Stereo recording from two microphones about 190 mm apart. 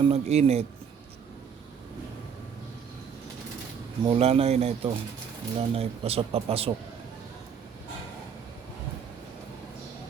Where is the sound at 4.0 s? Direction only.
30° right (ahead or behind).